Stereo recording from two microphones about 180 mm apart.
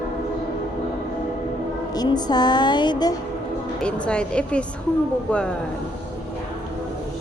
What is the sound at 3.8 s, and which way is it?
Speech, 5° left (ahead or behind).